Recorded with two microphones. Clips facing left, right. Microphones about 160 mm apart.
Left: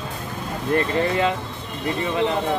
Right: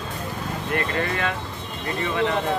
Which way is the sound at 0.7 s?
25° left (ahead or behind).